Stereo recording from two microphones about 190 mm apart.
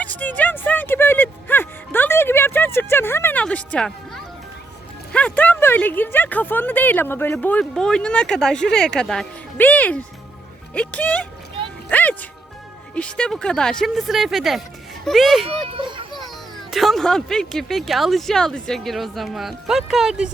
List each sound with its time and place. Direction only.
0.0 s speech: 10° left (ahead or behind)
11.9 s music: 10° left (ahead or behind)
12.9 s speech: 5° left (ahead or behind)
15.4 s speech: 30° right (ahead or behind)
16.6 s speech: centre (ahead or behind)